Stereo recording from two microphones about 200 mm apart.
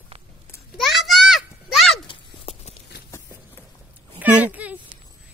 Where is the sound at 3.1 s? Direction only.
15° left (ahead or behind).